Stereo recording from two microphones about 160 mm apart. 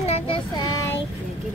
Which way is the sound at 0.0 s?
40° left (ahead or behind).